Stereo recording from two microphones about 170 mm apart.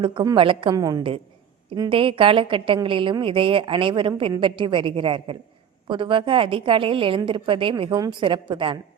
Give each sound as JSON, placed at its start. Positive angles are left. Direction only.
{"t": 0.0, "sound": "a woman's voice", "side_deg": -30}